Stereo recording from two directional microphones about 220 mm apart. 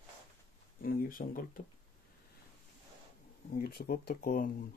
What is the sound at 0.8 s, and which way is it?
Speech, 40° left (ahead or behind).